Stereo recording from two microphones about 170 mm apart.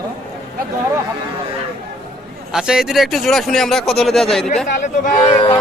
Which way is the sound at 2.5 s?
5° right (ahead or behind).